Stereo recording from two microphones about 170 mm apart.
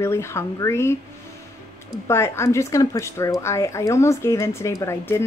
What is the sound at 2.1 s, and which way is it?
Speech, 15° left (ahead or behind).